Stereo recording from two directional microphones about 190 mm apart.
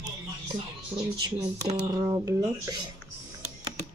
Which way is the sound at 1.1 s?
20° right (ahead or behind).